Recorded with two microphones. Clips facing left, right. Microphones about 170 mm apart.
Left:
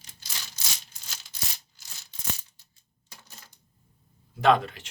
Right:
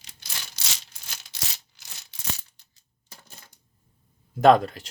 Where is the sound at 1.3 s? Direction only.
85° right.